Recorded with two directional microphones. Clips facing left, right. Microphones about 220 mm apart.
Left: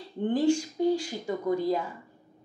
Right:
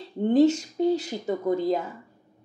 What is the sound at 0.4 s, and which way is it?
A woman's voice, 20° right (ahead or behind).